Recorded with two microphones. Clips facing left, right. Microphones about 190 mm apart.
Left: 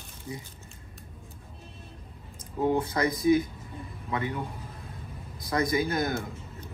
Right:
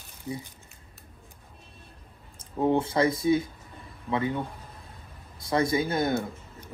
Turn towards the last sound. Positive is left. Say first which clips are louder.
# right 1 dB
turn(degrees=-10)  # may be behind; listen again after turning